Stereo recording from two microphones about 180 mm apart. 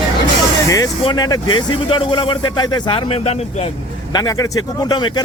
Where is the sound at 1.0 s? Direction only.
20° left (ahead or behind).